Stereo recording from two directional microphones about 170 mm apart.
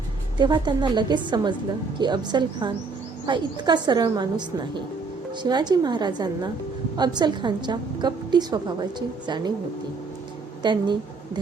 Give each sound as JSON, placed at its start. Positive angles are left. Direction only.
{"t": 0.3, "sound": "a woman's voice", "side_deg": -25}
{"t": 10.6, "sound": "a woman's voice", "side_deg": -25}